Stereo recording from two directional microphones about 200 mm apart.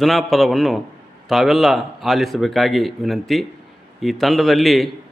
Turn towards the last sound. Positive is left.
turn(degrees=0)  # may be behind; listen again after turning